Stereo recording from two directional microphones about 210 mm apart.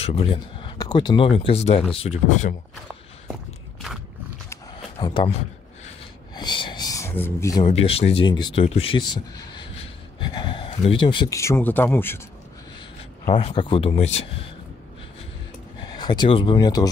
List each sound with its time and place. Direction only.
0.0 s speech: 25° left (ahead or behind)
4.9 s speech: 25° left (ahead or behind)
6.3 s a sound: 20° left (ahead or behind)
7.6 s speech: 30° left (ahead or behind); by 12.2 s 10° left (ahead or behind)
13.4 s speech: 25° left (ahead or behind)
16.0 s speech: 20° left (ahead or behind)